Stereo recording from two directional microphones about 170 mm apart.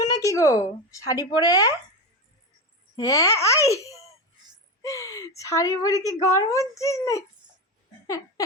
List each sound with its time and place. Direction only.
0.0 s speech: 20° left (ahead or behind)
2.9 s a child's voice: 20° left (ahead or behind)
4.8 s a sound: 20° left (ahead or behind)
5.4 s a woman's voice: 20° left (ahead or behind)